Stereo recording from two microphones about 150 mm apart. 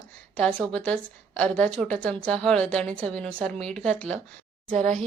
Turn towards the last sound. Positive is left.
turn(degrees=-55)  # may be behind; listen again after turning